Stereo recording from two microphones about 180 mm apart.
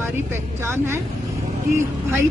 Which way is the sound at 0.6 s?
15° right (ahead or behind).